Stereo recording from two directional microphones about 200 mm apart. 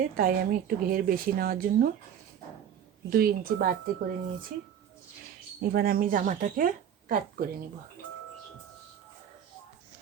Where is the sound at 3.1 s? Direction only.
45° right (ahead or behind).